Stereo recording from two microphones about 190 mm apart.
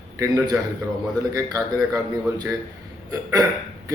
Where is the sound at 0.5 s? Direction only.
10° right (ahead or behind).